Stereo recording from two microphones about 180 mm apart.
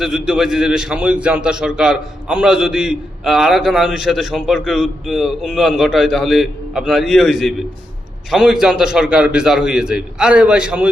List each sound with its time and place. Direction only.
0.0 s a man's voice: 5° right (ahead or behind)